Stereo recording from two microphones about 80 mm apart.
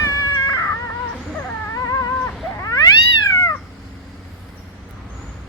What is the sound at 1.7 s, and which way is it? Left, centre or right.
Dog, left.